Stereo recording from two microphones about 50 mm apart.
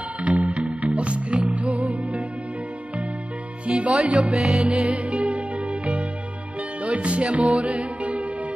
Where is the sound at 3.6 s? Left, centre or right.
Right.